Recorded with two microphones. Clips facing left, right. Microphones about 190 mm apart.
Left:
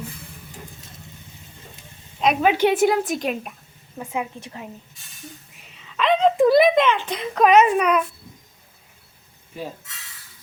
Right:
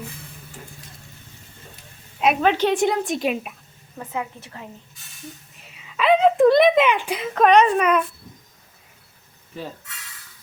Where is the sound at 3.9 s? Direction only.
15° left (ahead or behind).